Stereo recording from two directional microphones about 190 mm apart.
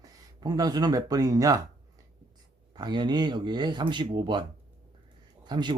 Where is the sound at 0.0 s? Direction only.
20° right (ahead or behind).